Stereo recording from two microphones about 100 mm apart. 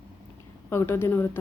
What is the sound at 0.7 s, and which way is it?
Speech, 25° left (ahead or behind).